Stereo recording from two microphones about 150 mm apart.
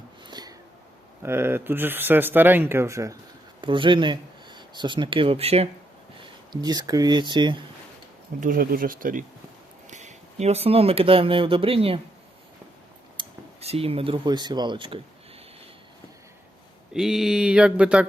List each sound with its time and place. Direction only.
0.3 s a sound: 25° right (ahead or behind)
1.2 s speech: 15° right (ahead or behind)
3.6 s speech: 35° right (ahead or behind)
6.5 s speech: 25° right (ahead or behind)
8.4 s speech: 65° right (ahead or behind)
9.9 s speech: 50° right (ahead or behind)
13.1 s speech: 40° right (ahead or behind)
16.9 s mantra: 5° right (ahead or behind)